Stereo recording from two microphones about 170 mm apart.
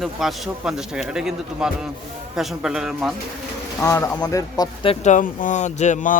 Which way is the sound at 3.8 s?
20° left (ahead or behind).